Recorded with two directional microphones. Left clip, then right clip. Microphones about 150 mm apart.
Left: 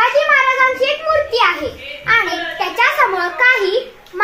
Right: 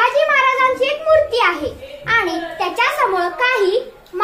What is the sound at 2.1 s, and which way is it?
Babbling, 60° right (ahead or behind).